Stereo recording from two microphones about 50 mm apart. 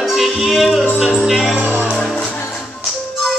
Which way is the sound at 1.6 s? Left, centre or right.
Right.